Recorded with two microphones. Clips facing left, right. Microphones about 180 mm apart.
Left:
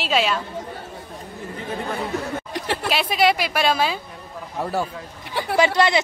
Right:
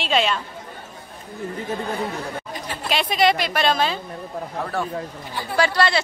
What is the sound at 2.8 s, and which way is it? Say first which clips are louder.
A woman's voice: right 1 dB; 5° left (ahead or behind).